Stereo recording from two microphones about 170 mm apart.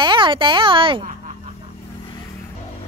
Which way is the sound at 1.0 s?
45° right (ahead or behind).